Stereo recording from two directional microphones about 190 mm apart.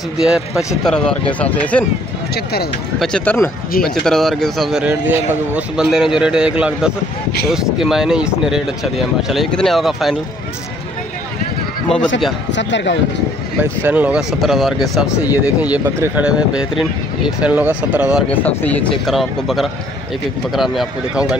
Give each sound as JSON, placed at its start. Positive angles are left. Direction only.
{"t": 0.2, "sound": "speech", "side_deg": -5}
{"t": 2.3, "sound": "speech", "side_deg": 55}
{"t": 3.0, "sound": "speech", "side_deg": 5}
{"t": 12.4, "sound": "speech", "side_deg": 70}
{"t": 13.6, "sound": "speech", "side_deg": -10}
{"t": 18.6, "sound": "speech", "side_deg": 10}